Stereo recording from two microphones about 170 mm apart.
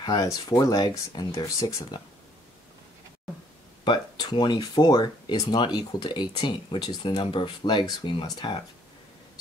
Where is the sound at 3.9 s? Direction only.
25° left (ahead or behind).